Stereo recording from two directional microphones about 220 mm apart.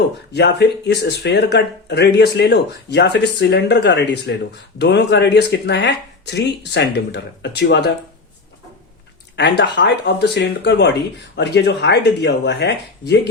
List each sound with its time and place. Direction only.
0.3 s speech: 50° left (ahead or behind)
9.3 s speech: 50° left (ahead or behind)